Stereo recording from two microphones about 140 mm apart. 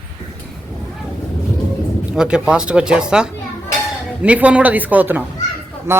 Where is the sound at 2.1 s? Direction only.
5° right (ahead or behind).